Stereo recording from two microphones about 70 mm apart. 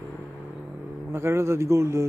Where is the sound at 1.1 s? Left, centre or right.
Right.